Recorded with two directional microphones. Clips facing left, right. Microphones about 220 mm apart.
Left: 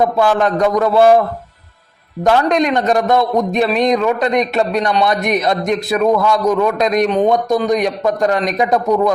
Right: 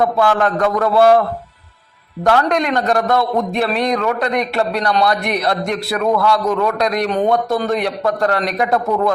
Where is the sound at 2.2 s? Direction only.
20° left (ahead or behind).